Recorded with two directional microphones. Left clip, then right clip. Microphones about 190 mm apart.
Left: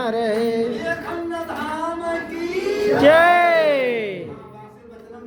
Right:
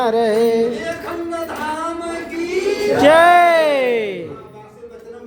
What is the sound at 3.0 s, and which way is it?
Music, 30° right (ahead or behind).